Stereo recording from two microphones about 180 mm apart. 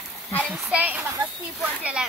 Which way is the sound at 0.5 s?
5° right (ahead or behind).